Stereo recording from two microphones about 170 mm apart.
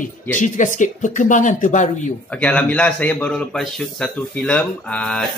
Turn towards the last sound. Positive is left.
turn(degrees=5)  # may be behind; listen again after turning